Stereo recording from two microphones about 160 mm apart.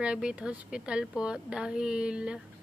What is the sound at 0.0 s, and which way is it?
Speech, 5° right (ahead or behind).